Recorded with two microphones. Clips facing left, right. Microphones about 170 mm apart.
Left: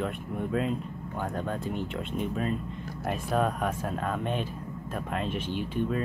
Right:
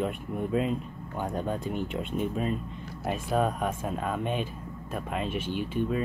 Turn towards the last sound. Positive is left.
turn(degrees=-50)  # may be behind; listen again after turning